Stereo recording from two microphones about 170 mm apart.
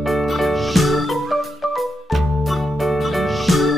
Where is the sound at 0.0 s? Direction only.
Centre (ahead or behind).